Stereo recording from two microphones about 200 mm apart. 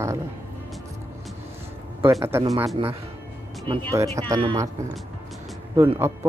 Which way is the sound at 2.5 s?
Centre (ahead or behind).